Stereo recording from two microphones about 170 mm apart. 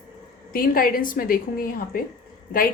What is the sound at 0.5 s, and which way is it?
A woman's voice, 60° left (ahead or behind).